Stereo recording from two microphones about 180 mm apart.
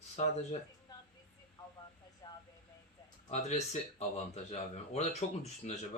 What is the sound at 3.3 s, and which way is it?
Speech, 40° left (ahead or behind).